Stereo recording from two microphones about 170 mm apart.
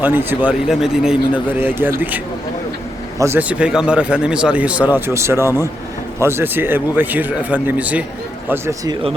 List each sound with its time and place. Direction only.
0.0 s a man's voice: 10° right (ahead or behind)